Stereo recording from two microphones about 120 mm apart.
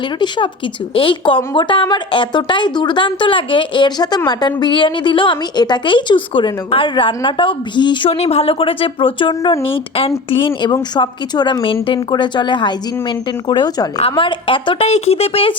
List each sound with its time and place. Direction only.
0.9 s a woman's voice: 45° left (ahead or behind)
8.2 s a woman's voice: 55° left (ahead or behind)
14.8 s speech: 60° left (ahead or behind)